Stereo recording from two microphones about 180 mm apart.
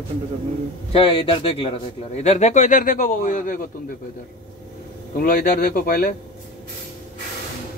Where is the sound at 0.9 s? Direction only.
30° left (ahead or behind); by 3.6 s 45° left (ahead or behind).